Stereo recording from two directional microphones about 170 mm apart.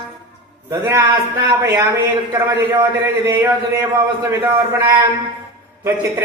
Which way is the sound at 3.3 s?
15° right (ahead or behind).